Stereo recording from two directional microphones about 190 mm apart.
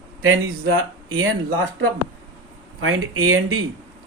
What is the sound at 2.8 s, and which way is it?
Speech, 90° right.